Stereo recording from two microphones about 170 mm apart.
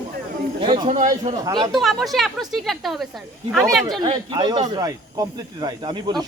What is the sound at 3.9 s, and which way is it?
Speech, 30° right (ahead or behind).